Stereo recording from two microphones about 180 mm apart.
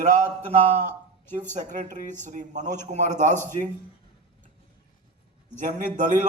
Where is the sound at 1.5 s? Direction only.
45° right (ahead or behind).